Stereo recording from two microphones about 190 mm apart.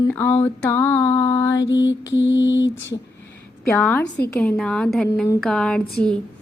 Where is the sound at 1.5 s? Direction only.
75° left (ahead or behind).